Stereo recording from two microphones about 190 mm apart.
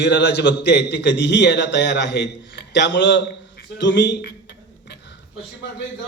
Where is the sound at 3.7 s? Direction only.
65° left (ahead or behind).